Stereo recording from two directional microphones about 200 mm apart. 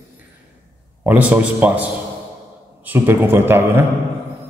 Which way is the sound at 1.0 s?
10° right (ahead or behind).